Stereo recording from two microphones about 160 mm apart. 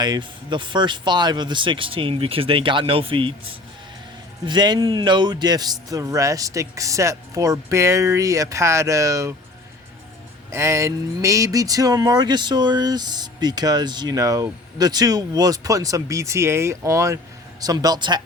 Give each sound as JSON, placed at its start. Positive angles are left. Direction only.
{"t": 0.0, "sound": "a man's voice", "side_deg": -30}
{"t": 10.5, "sound": "a man's voice", "side_deg": -20}